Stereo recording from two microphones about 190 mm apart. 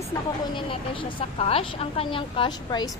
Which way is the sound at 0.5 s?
25° left (ahead or behind).